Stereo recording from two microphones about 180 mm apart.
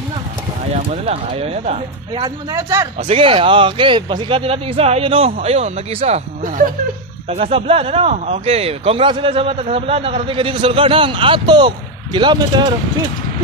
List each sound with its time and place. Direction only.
0.7 s speech: 35° right (ahead or behind)
2.2 s speech: 15° right (ahead or behind)
3.0 s speech: 30° right (ahead or behind)
7.2 s speech: 35° right (ahead or behind)